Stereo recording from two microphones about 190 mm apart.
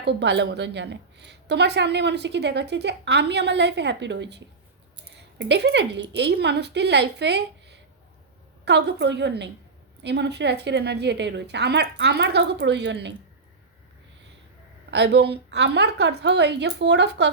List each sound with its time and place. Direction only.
0.0 s a woman's voice: 65° right (ahead or behind)
14.8 s a woman's voice: 65° right (ahead or behind)